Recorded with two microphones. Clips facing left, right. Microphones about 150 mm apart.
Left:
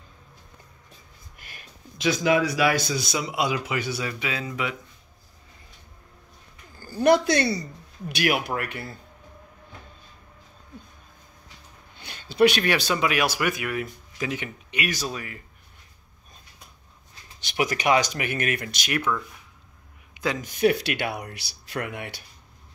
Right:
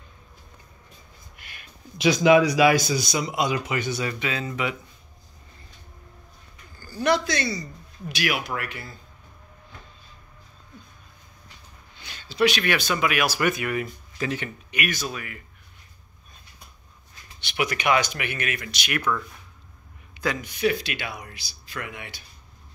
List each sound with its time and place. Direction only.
1.4 s a sound: 40° left (ahead or behind)
2.0 s speech: 15° right (ahead or behind)
3.0 s speech: centre (ahead or behind)
6.8 s a woman's voice: 50° left (ahead or behind)
12.0 s a sound: 55° left (ahead or behind)
12.6 s speech: 30° left (ahead or behind)
13.4 s speech: 5° left (ahead or behind)
14.7 s speech: 30° left (ahead or behind)
17.4 s speech: 40° left (ahead or behind)
19.1 s speech: 5° left (ahead or behind)
20.3 s speech: 45° left (ahead or behind)
20.7 s speech: 65° left (ahead or behind)